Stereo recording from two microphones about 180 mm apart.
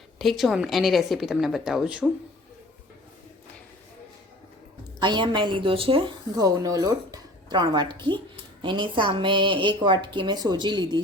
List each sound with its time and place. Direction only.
0.2 s a woman's voice: centre (ahead or behind)
4.9 s a woman's voice: 25° right (ahead or behind)